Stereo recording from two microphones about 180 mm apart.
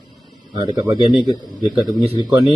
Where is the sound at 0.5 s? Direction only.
20° right (ahead or behind).